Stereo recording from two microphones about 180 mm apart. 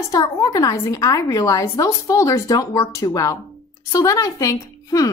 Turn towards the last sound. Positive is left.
turn(degrees=20)  # may be behind; listen again after turning